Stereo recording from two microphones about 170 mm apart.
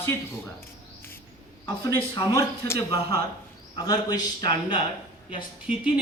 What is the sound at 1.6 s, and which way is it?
Speech, 25° left (ahead or behind).